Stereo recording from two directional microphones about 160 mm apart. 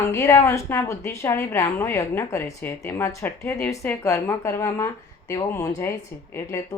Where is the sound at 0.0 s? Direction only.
20° left (ahead or behind).